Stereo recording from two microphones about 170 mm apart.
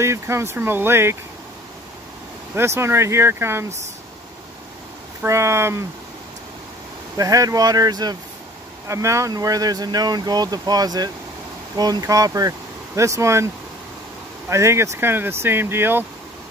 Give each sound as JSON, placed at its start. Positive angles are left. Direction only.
{"t": 0.0, "sound": "speech", "side_deg": -15}
{"t": 2.5, "sound": "speech", "side_deg": -15}
{"t": 5.2, "sound": "speech", "side_deg": -15}
{"t": 7.2, "sound": "speech", "side_deg": -20}
{"t": 14.5, "sound": "speech", "side_deg": -15}